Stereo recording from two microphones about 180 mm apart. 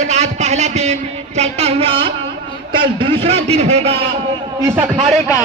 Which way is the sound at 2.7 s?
30° right (ahead or behind).